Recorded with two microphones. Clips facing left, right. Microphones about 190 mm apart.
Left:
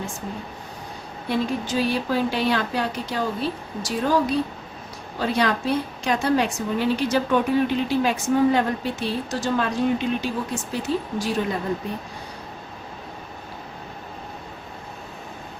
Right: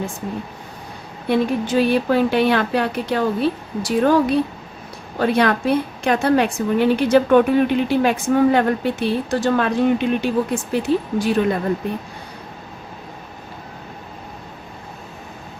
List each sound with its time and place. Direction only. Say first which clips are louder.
1.3 s a woman's voice: right 6 dB; 60° right (ahead or behind)